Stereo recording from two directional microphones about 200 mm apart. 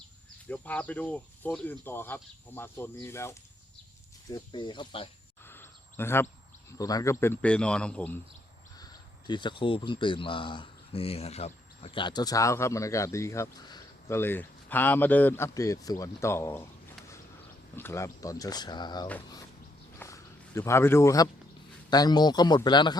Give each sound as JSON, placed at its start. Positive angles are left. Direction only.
{"t": 0.4, "sound": "speech", "side_deg": 5}
{"t": 5.5, "sound": "a sound", "side_deg": 10}
{"t": 6.7, "sound": "speech", "side_deg": 15}
{"t": 8.8, "sound": "speech", "side_deg": 20}
{"t": 17.7, "sound": "speech", "side_deg": 15}
{"t": 20.0, "sound": "a sound", "side_deg": 15}
{"t": 21.8, "sound": "speech", "side_deg": 20}